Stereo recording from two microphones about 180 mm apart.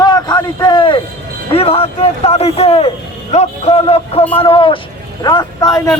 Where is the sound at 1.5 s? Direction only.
30° left (ahead or behind).